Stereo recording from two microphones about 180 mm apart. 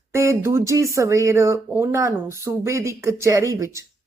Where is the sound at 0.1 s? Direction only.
15° right (ahead or behind).